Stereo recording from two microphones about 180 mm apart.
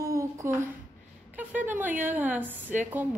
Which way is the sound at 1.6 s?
10° right (ahead or behind).